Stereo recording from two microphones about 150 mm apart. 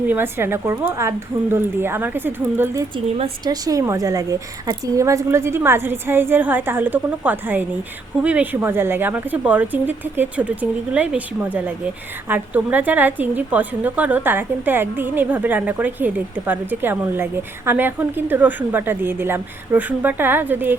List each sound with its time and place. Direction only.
0.1 s a woman's voice: 15° right (ahead or behind)
3.4 s a woman's voice: 25° right (ahead or behind)